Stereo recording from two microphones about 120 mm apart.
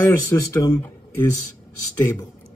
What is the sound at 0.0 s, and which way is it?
Speech, 20° left (ahead or behind).